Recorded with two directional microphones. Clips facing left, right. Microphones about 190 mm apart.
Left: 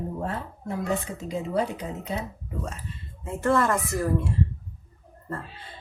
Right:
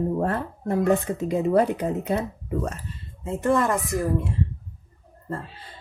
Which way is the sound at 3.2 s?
20° right (ahead or behind).